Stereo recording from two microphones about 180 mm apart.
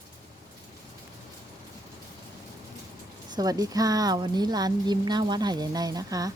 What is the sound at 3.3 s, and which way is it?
Speech, 20° right (ahead or behind).